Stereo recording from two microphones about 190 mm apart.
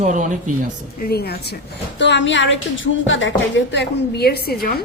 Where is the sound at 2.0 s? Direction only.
70° left (ahead or behind).